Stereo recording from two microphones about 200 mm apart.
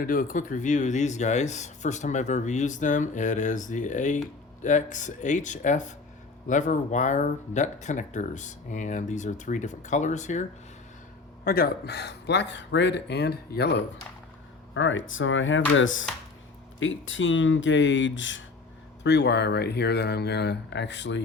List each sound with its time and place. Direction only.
0.0 s speech: 45° left (ahead or behind)
11.4 s speech: 50° left (ahead or behind)
14.7 s speech: 70° left (ahead or behind)
19.0 s speech: 60° left (ahead or behind)